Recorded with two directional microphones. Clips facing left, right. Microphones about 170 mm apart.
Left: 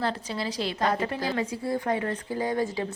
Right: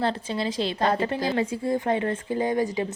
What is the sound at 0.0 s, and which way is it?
Speech, 25° right (ahead or behind).